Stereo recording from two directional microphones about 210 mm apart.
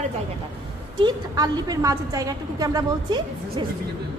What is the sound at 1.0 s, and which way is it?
A woman's voice, 20° right (ahead or behind).